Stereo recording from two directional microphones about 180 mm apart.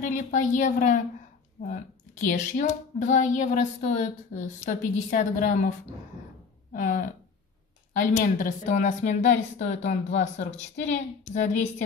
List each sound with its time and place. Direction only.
0.0 s a woman's voice: 45° left (ahead or behind)
6.7 s a woman's voice: 50° left (ahead or behind)